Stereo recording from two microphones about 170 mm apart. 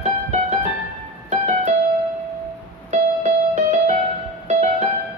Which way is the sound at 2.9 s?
45° right (ahead or behind).